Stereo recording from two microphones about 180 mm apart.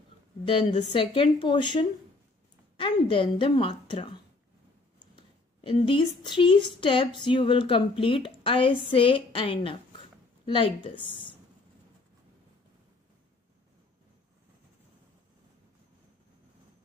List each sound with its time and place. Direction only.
0.9 s speech: 30° left (ahead or behind)
5.1 s a woman's voice: 30° left (ahead or behind)